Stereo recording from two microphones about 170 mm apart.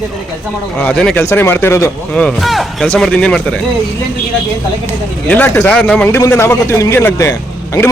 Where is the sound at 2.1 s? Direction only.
5° left (ahead or behind).